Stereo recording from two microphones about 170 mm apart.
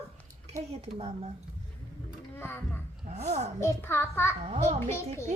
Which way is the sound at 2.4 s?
10° left (ahead or behind).